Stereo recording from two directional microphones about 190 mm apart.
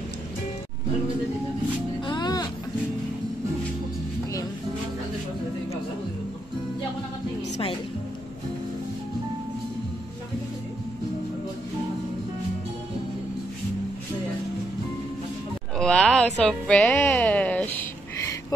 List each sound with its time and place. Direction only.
2.0 s music: 20° left (ahead or behind)
15.8 s music: 5° left (ahead or behind)